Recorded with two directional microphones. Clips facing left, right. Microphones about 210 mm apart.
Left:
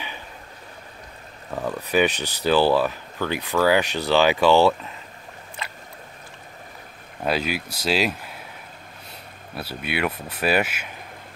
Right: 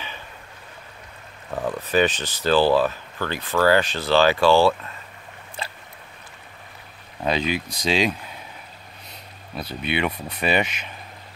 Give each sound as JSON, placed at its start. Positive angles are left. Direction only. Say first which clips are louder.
{"t": 1.5, "sound": "speech", "louder": "right 1 dB", "side_deg": 10}
{"t": 5.6, "sound": "boat", "louder": "right 3 dB", "side_deg": -30}
{"t": 7.2, "sound": "speech", "louder": "right 1 dB", "side_deg": 5}
{"t": 9.6, "sound": "speech", "louder": "right 1 dB", "side_deg": 5}